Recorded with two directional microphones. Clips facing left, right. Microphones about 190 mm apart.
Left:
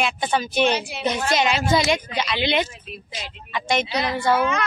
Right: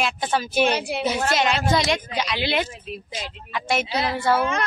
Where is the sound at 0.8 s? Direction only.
60° right (ahead or behind).